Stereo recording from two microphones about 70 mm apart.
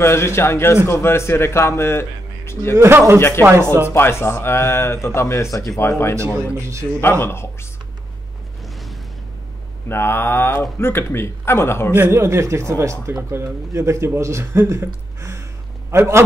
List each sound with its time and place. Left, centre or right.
0.0 s speech: left
2.7 s a man's voice: right
3.2 s speech: left
3.4 s a man's voice: right
3.9 s speech: left
6.6 s a man's voice: right
7.0 s speech: left
9.8 s speech: left
12.1 s a man's voice: right
15.1 s a sound: right
15.9 s a man's voice: right